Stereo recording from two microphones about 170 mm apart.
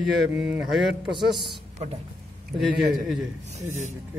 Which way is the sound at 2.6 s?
Centre (ahead or behind).